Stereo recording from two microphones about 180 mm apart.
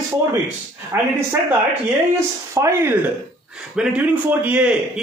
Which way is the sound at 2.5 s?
15° right (ahead or behind).